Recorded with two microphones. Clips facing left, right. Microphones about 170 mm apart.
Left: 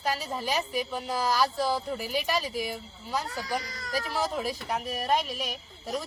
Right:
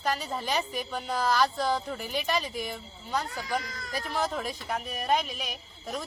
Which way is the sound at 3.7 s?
40° left (ahead or behind).